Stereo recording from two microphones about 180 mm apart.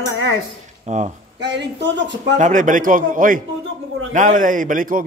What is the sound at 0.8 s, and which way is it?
Speech, 40° right (ahead or behind).